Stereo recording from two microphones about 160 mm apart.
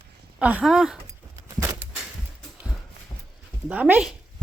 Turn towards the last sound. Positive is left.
turn(degrees=-10)  # may be behind; listen again after turning